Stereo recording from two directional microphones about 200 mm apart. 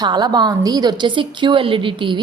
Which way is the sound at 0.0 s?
20° right (ahead or behind).